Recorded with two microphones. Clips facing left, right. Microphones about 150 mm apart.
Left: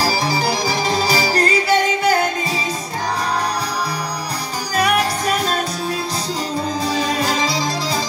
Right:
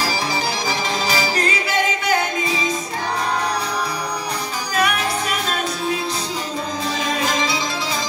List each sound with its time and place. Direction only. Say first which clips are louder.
0.0 s music: left 3 dB; 35° left (ahead or behind)
4.7 s music: left 3 dB; 35° left (ahead or behind)
7.0 s music: even; 35° left (ahead or behind)